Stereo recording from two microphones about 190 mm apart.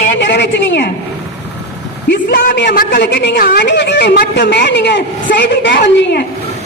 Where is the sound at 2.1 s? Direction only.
55° left (ahead or behind).